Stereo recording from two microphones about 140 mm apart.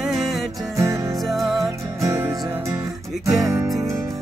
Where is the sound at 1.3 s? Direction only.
Centre (ahead or behind).